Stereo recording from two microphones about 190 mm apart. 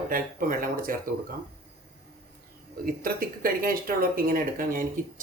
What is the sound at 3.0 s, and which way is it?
Speech, 50° right (ahead or behind).